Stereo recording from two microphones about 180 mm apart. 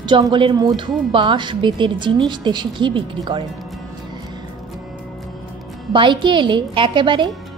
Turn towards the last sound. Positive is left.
turn(degrees=-25)  # may be behind; listen again after turning